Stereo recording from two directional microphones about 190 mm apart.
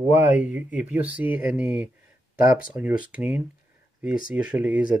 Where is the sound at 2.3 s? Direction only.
50° left (ahead or behind).